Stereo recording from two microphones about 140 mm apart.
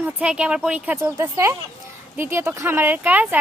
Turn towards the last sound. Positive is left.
turn(degrees=-10)  # may be behind; listen again after turning